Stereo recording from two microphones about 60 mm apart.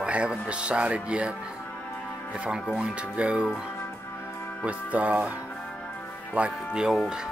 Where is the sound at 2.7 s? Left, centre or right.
Centre.